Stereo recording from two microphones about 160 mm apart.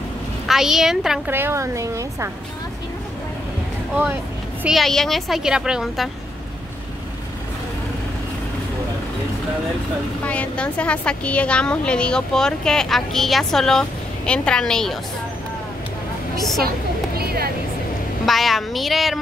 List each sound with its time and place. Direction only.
0.5 s a woman's voice: 5° right (ahead or behind)
1.3 s a woman's voice: 15° right (ahead or behind)
4.6 s a woman's voice: centre (ahead or behind)
10.2 s a woman's voice: 10° left (ahead or behind)
17.2 s vehicle: 75° right (ahead or behind)
18.2 s speech: centre (ahead or behind)